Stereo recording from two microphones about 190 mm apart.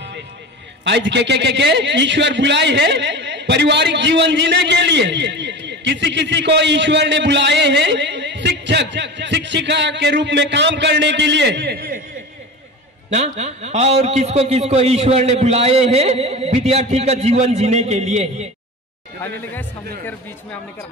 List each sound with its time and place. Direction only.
0.8 s a man's voice: 70° right (ahead or behind); by 12.0 s 50° right (ahead or behind)
13.1 s a man's voice: 35° right (ahead or behind)